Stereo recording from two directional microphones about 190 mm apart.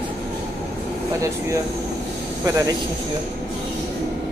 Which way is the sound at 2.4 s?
20° right (ahead or behind).